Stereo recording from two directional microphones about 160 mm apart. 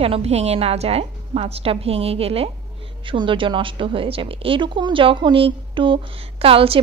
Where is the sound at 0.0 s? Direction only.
40° right (ahead or behind).